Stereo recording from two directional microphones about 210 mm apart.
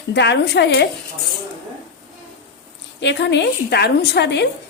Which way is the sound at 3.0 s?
55° left (ahead or behind).